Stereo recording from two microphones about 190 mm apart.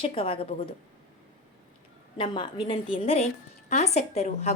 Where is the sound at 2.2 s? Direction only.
25° left (ahead or behind).